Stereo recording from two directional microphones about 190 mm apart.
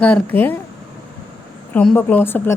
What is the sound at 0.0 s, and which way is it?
Speech, 10° left (ahead or behind).